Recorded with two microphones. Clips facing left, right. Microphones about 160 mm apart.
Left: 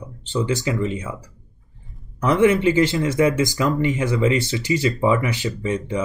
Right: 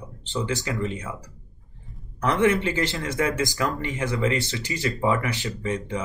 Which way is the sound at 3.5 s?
20° left (ahead or behind).